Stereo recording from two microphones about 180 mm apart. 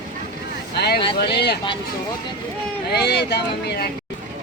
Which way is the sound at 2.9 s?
65° left (ahead or behind).